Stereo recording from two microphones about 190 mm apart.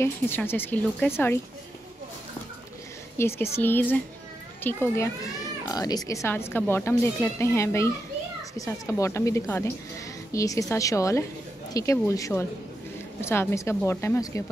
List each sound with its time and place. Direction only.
0.0 s speech: 10° left (ahead or behind)
3.2 s speech: 15° left (ahead or behind)